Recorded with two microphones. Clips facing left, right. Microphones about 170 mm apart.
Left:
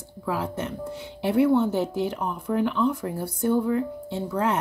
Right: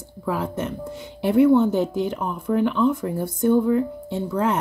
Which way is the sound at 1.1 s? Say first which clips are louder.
Right 4 dB; 15° right (ahead or behind).